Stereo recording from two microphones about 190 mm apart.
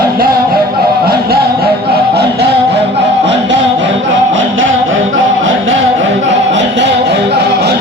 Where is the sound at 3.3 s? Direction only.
70° right (ahead or behind).